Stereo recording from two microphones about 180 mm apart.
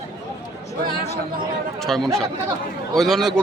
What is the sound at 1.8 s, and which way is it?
Speech, centre (ahead or behind).